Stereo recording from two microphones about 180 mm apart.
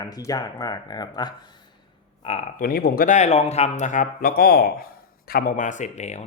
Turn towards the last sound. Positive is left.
turn(degrees=40)  # may be behind; listen again after turning